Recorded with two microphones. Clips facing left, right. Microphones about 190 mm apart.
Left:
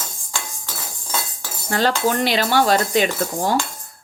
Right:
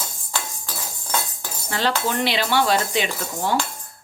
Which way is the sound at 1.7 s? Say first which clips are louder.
Left 4 dB; 45° left (ahead or behind).